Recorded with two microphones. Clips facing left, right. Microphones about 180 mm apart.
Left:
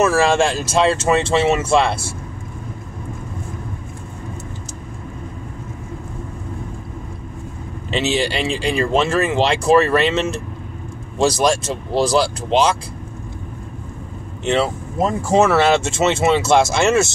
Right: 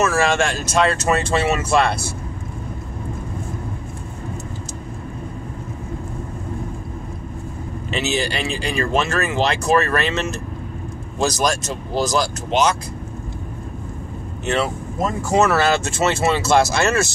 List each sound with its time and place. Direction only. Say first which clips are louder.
0.0 s speech: left 3 dB; 30° left (ahead or behind)
7.9 s speech: left 3 dB; 30° left (ahead or behind)
14.4 s speech: left 3 dB; 30° left (ahead or behind)